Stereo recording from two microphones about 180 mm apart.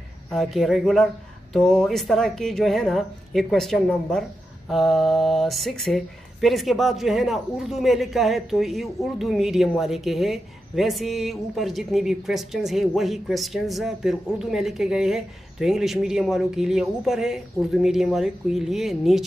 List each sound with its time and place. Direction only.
0.3 s speech: centre (ahead or behind)